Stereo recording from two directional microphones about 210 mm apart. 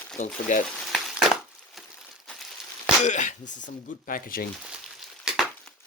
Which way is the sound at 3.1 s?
35° left (ahead or behind).